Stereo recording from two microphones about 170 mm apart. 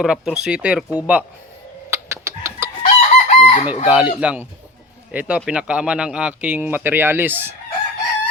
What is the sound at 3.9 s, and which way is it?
A man's voice, 10° right (ahead or behind).